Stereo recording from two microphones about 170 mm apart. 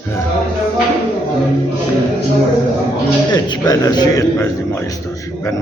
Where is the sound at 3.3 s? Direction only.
25° left (ahead or behind).